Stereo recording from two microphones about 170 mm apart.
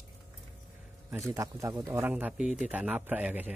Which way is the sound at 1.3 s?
20° right (ahead or behind).